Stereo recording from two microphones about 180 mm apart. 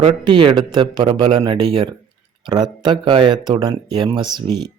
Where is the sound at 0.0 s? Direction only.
25° right (ahead or behind).